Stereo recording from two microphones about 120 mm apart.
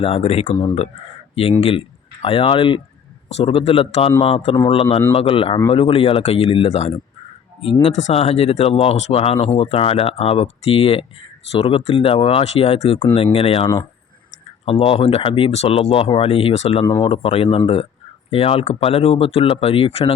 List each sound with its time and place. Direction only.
0.0 s speech: 55° left (ahead or behind)
2.2 s speech: 45° left (ahead or behind)
3.2 s speech: 55° left (ahead or behind)